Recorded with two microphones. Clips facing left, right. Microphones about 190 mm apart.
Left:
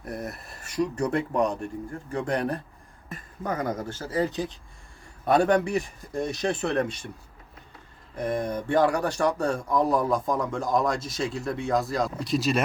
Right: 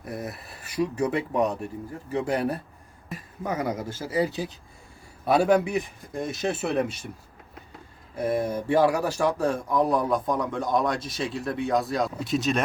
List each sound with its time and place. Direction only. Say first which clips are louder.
0.0 s speech: even; centre (ahead or behind)
8.1 s speech: right 2 dB; 10° right (ahead or behind)